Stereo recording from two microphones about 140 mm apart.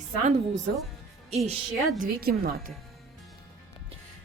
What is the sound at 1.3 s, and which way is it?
Speech, 50° right (ahead or behind).